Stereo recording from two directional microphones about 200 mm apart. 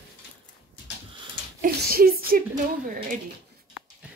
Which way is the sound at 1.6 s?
50° right (ahead or behind).